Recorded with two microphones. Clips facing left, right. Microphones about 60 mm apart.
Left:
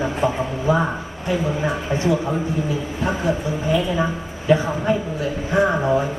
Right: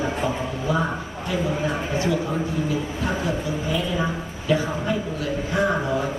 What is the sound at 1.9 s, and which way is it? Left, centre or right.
Speech, left.